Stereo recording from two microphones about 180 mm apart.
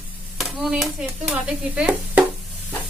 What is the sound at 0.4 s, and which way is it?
Stir, centre (ahead or behind).